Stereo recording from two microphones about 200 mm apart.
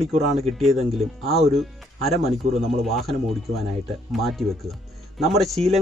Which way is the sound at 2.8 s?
Centre (ahead or behind).